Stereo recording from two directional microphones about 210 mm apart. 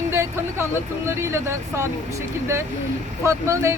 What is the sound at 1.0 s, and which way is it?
Speech, 10° right (ahead or behind).